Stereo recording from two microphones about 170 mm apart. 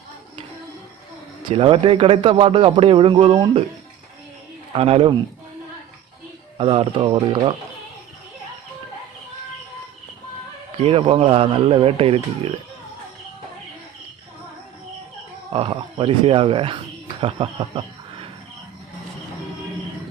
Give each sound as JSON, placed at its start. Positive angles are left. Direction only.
{"t": 1.5, "sound": "a man's voice", "side_deg": -35}
{"t": 4.7, "sound": "a man's voice", "side_deg": -35}
{"t": 6.6, "sound": "a man's voice", "side_deg": -30}
{"t": 10.8, "sound": "a man's voice", "side_deg": -35}
{"t": 15.5, "sound": "a man's voice", "side_deg": -35}